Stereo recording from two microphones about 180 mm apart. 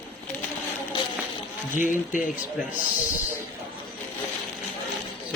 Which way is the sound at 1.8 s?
45° left (ahead or behind).